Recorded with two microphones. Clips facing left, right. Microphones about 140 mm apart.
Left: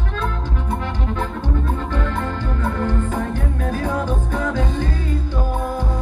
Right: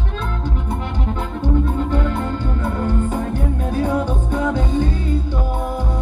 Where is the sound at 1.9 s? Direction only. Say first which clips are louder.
Right 3 dB; 25° right (ahead or behind).